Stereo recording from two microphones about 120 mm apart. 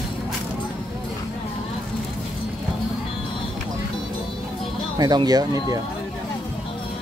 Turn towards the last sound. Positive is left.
turn(degrees=-30)  # may be behind; listen again after turning